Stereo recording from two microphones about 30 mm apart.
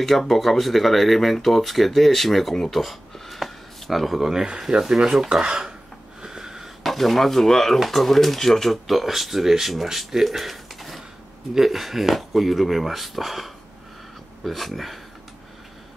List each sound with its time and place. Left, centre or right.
0.0 s speech: centre
2.6 s a sound: centre
4.2 s speech: centre
4.6 s speech: right
5.0 s speech: centre
5.3 s speech: right
6.2 s wheeze: centre
6.8 s speech: centre
10.2 s a sound: centre
11.5 s speech: centre